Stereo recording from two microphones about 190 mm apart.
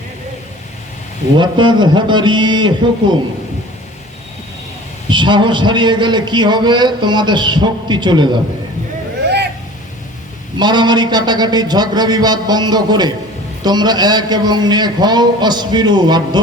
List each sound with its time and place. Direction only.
1.4 s a man's voice: 25° right (ahead or behind)
5.0 s a man's voice: 25° right (ahead or behind)
9.2 s vehicle: 60° right (ahead or behind)
10.6 s a man's voice: 25° right (ahead or behind)